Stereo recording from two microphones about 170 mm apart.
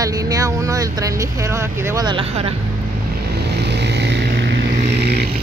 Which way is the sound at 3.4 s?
75° right (ahead or behind).